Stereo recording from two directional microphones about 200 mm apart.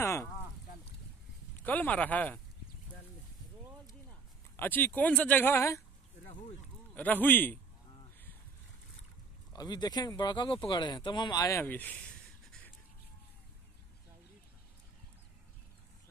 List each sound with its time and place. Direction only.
0.0 s a sound: 15° left (ahead or behind)
1.6 s speech: 10° left (ahead or behind)
4.6 s speech: 10° left (ahead or behind)
7.0 s speech: 10° left (ahead or behind)
9.5 s speech: 20° left (ahead or behind)